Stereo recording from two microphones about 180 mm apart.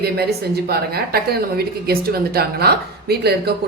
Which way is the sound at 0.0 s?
60° right (ahead or behind).